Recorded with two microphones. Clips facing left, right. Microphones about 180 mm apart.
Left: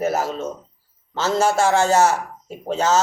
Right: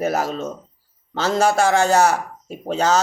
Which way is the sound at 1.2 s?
15° right (ahead or behind).